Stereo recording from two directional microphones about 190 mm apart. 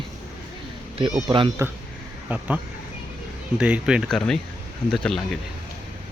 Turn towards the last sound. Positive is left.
turn(degrees=5)  # may be behind; listen again after turning